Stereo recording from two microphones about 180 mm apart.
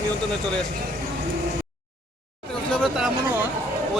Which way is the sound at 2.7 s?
Centre (ahead or behind).